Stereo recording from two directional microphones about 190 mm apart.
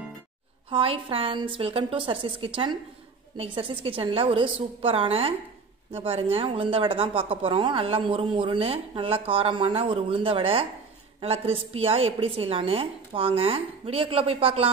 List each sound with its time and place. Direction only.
0.7 s a woman's voice: 30° right (ahead or behind)